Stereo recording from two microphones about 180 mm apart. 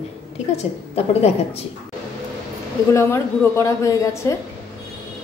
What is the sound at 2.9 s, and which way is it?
A woman's voice, 15° left (ahead or behind).